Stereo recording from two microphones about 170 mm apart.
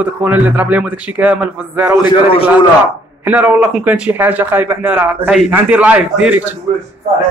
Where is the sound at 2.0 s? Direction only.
30° left (ahead or behind).